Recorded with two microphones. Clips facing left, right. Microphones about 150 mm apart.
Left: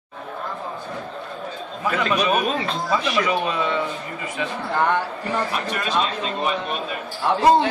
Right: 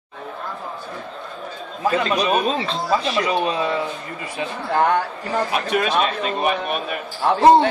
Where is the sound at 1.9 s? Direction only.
30° right (ahead or behind).